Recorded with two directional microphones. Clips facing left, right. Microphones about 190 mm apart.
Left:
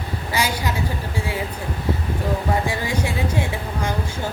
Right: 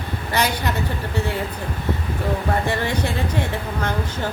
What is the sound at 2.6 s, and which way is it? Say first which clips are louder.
Speech: right 1 dB; 10° left (ahead or behind).